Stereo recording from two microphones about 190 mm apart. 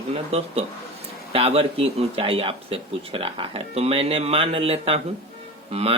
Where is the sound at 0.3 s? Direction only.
30° right (ahead or behind).